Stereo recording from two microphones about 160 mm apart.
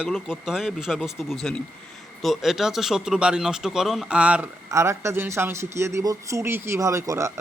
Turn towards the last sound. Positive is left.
turn(degrees=-20)  # may be behind; listen again after turning